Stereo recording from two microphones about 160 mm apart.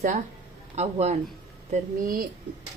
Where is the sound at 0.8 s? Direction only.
45° right (ahead or behind).